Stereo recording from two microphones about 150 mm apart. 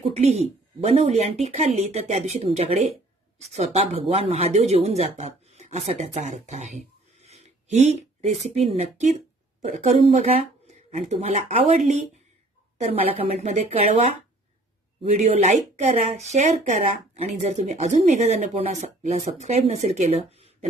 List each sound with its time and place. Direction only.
0.0 s speech: 45° right (ahead or behind)